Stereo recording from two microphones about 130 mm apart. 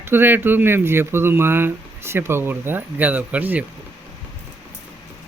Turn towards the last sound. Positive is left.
turn(degrees=-10)  # may be behind; listen again after turning